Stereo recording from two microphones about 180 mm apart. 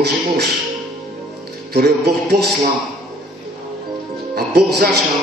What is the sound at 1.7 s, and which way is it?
Music, 65° right (ahead or behind).